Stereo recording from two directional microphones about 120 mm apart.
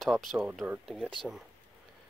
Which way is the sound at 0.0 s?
Centre (ahead or behind).